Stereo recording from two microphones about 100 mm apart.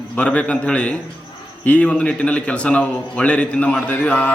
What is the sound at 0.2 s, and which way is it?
A man's voice, 15° left (ahead or behind).